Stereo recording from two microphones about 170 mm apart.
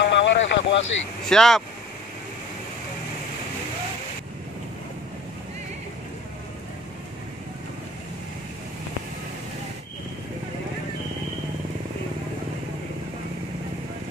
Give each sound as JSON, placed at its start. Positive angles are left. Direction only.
{"t": 0.0, "sound": "vehicle", "side_deg": 90}
{"t": 1.3, "sound": "speech", "side_deg": 5}